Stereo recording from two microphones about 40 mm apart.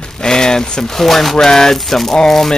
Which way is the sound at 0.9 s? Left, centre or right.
Centre.